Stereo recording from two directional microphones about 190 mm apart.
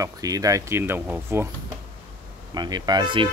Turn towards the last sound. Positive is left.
turn(degrees=-25)  # may be behind; listen again after turning